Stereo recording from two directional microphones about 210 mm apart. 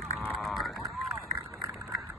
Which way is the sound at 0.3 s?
Centre (ahead or behind).